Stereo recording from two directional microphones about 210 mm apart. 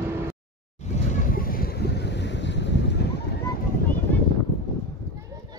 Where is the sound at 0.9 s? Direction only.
35° left (ahead or behind).